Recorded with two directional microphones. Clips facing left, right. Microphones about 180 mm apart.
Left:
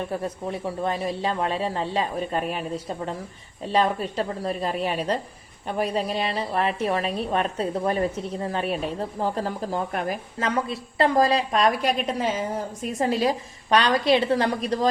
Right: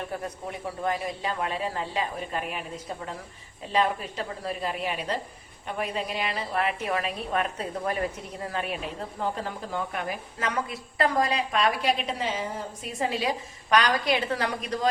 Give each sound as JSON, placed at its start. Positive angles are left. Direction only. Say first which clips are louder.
{"t": 0.5, "sound": "a woman's voice", "louder": "left 1 dB", "side_deg": 30}
{"t": 10.4, "sound": "a woman's voice", "louder": "left 4 dB", "side_deg": 30}